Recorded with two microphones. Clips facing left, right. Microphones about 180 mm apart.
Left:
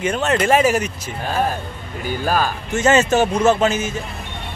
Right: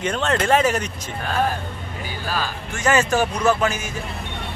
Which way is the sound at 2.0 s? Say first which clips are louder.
Left 8 dB; 50° left (ahead or behind).